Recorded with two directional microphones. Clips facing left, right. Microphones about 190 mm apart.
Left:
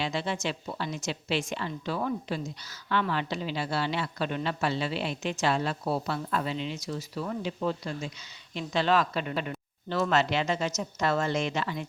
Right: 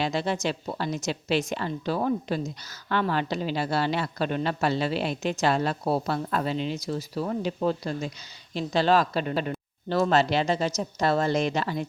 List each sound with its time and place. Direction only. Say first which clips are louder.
0.0 s a woman's voice: right 4 dB; 40° right (ahead or behind)